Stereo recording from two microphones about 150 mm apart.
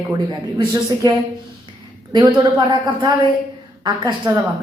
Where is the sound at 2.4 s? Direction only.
30° right (ahead or behind).